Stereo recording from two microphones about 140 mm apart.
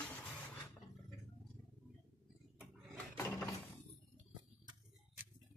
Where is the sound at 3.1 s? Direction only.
20° left (ahead or behind).